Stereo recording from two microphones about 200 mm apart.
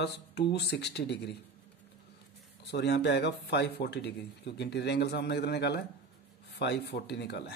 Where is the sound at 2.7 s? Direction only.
55° left (ahead or behind).